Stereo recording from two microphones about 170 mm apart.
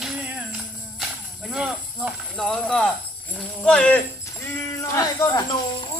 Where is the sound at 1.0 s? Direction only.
Centre (ahead or behind); by 5.9 s 20° left (ahead or behind).